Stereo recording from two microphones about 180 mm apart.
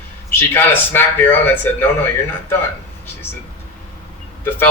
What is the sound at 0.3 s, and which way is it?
Speech, 10° left (ahead or behind).